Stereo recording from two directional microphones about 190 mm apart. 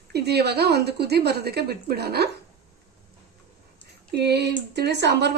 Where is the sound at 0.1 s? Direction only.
60° right (ahead or behind).